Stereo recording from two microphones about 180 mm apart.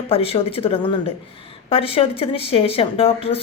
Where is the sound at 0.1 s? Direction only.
30° left (ahead or behind).